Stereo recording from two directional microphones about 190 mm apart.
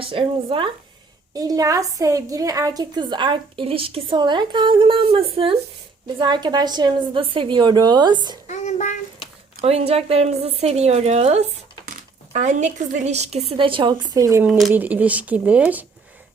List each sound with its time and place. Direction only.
0.0 s a woman's voice: 30° right (ahead or behind)
8.4 s child singing: 40° left (ahead or behind)
9.6 s a woman's voice: 30° right (ahead or behind); by 15.9 s 5° right (ahead or behind)